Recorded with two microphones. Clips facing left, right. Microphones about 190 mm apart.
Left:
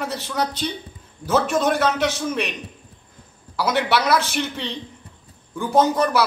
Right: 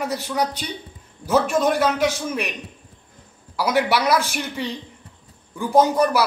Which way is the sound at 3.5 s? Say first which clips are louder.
Right 1 dB; 10° right (ahead or behind).